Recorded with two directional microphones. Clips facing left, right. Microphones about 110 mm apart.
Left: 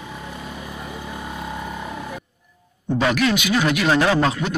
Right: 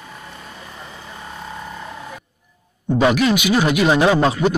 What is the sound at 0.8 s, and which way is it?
Vehicle, 10° left (ahead or behind).